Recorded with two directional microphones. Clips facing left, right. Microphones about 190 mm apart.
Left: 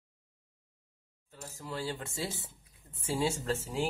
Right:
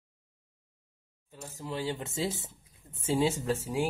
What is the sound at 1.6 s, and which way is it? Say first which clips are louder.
Speech: right 3 dB; 20° right (ahead or behind).